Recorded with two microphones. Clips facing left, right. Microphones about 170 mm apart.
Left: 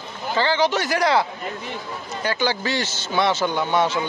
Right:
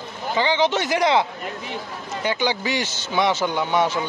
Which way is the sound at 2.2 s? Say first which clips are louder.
Even; 15° right (ahead or behind).